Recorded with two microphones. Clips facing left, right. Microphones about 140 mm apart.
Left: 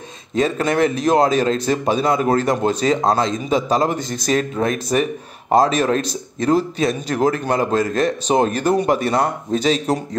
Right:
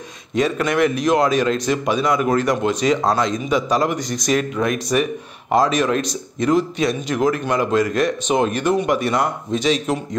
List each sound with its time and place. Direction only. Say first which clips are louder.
0.4 s a man's voice: left 1 dB; 30° left (ahead or behind)